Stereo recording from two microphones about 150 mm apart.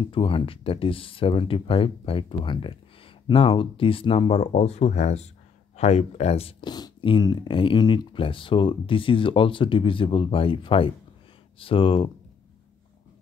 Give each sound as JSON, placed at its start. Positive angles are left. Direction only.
{"t": 0.0, "sound": "speech", "side_deg": 35}
{"t": 6.7, "sound": "speech", "side_deg": 30}